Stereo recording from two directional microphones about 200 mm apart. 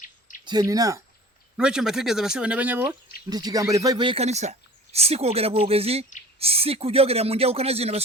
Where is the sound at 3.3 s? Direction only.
20° right (ahead or behind).